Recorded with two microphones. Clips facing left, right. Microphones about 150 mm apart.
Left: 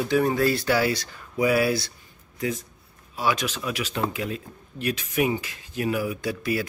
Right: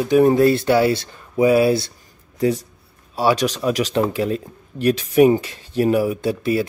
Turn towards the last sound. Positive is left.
turn(degrees=-25)  # may be behind; listen again after turning